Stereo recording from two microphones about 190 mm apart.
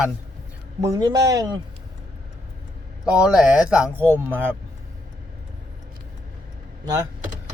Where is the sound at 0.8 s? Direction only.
20° right (ahead or behind).